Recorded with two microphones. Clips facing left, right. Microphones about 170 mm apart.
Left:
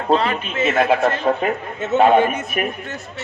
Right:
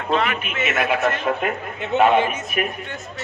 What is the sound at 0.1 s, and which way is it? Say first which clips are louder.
A man's voice: left 4 dB; 30° left (ahead or behind).